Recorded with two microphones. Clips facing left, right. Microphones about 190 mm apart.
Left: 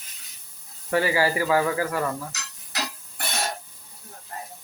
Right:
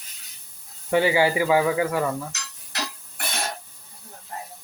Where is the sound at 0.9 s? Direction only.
20° right (ahead or behind).